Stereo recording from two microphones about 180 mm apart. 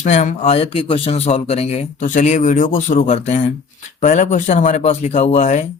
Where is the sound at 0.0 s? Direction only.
45° left (ahead or behind).